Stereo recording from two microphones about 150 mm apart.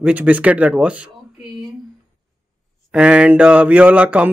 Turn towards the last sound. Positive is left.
turn(degrees=-10)  # may be behind; listen again after turning